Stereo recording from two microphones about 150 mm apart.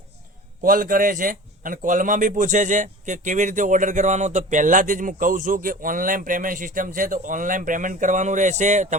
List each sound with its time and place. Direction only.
0.6 s a man's voice: 65° right (ahead or behind)